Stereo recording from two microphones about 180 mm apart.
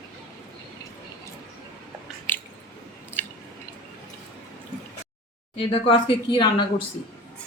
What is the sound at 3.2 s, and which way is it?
Chewing, 10° left (ahead or behind).